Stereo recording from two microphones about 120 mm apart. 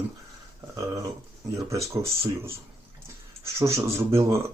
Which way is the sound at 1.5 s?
25° right (ahead or behind).